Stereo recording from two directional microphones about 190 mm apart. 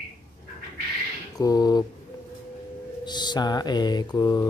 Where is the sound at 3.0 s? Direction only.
20° left (ahead or behind).